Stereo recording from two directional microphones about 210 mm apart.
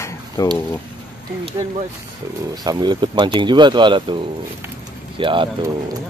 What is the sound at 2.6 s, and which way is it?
Speech, 20° right (ahead or behind).